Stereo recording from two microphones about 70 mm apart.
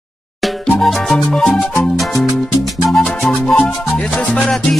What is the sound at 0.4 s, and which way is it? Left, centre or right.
Music, centre.